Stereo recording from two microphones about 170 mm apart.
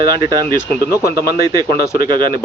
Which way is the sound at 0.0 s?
25° right (ahead or behind).